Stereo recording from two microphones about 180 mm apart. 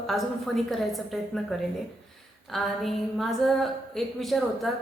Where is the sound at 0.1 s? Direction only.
Centre (ahead or behind).